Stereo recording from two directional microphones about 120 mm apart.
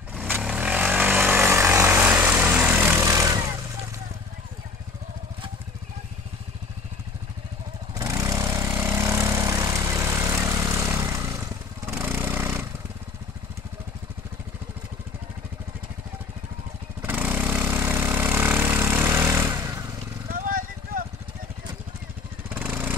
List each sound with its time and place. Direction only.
0.2 s vehicle: 10° right (ahead or behind); by 3.5 s 25° right (ahead or behind)
7.9 s vehicle: 30° right (ahead or behind)
17.0 s vehicle: 15° right (ahead or behind)
22.5 s vehicle: 15° right (ahead or behind)